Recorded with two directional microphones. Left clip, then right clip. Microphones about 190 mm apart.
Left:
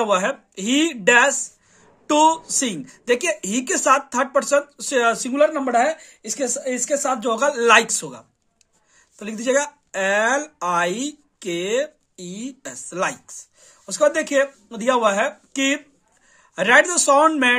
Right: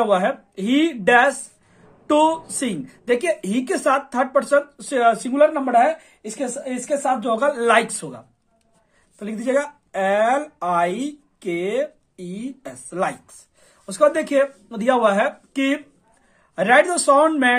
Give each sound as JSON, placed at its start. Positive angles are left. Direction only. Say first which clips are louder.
{"t": 0.0, "sound": "speech", "louder": "right 1 dB", "side_deg": 30}
{"t": 9.2, "sound": "speech", "louder": "left 1 dB", "side_deg": 35}